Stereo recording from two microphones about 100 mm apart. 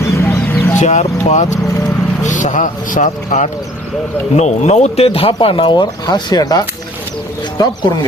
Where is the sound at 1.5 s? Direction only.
30° left (ahead or behind).